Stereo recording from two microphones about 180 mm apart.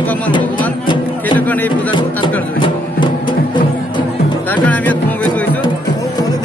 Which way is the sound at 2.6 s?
25° left (ahead or behind).